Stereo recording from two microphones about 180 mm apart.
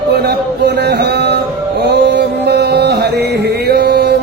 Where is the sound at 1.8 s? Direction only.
70° right (ahead or behind).